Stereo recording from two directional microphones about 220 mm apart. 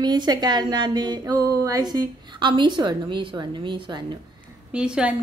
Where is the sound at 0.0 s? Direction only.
20° right (ahead or behind).